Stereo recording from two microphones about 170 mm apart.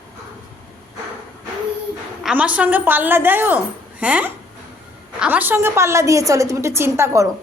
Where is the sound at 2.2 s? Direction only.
5° right (ahead or behind).